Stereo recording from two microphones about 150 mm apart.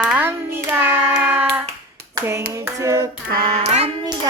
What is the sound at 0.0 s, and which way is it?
Hands, 10° right (ahead or behind).